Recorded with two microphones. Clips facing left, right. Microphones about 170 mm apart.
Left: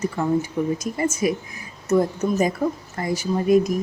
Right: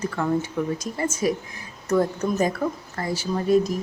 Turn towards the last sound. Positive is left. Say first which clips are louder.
# left 2 dB
turn(degrees=10)  # may be behind; listen again after turning